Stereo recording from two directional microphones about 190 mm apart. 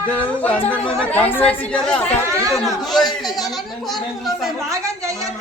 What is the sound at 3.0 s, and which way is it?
Speech, 20° left (ahead or behind).